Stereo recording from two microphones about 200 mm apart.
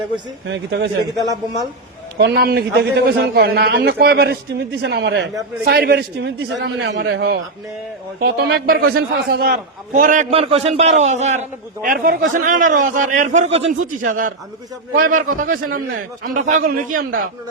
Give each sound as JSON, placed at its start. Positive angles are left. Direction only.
{"t": 0.4, "sound": "a man's voice", "side_deg": -65}
{"t": 2.1, "sound": "a man's voice", "side_deg": -55}
{"t": 10.3, "sound": "a man's voice", "side_deg": -30}
{"t": 11.9, "sound": "a man's voice", "side_deg": -45}